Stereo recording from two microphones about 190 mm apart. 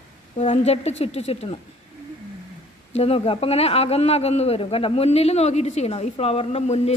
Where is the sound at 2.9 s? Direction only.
35° left (ahead or behind).